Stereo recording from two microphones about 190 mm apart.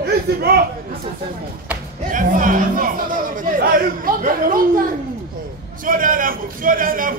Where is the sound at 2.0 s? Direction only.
45° right (ahead or behind).